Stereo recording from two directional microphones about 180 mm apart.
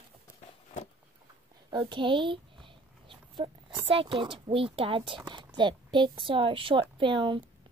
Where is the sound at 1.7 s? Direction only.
25° right (ahead or behind).